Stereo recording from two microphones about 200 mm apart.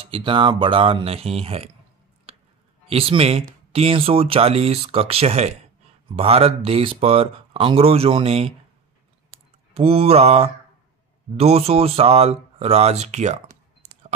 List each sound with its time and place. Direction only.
0.1 s speech: 25° right (ahead or behind)
2.9 s speech: 30° right (ahead or behind)
9.8 s speech: 30° right (ahead or behind)